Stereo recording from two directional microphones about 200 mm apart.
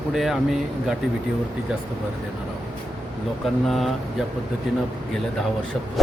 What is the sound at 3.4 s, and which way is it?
Speech, centre (ahead or behind).